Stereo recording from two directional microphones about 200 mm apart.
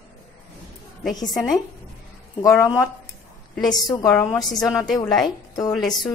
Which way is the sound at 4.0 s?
20° left (ahead or behind).